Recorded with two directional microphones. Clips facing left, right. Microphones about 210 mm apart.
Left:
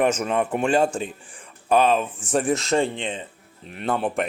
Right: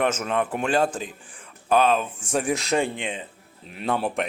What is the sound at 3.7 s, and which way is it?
Speech, centre (ahead or behind).